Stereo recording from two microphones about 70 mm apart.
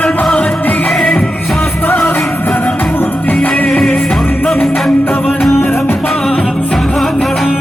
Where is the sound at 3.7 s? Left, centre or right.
Centre.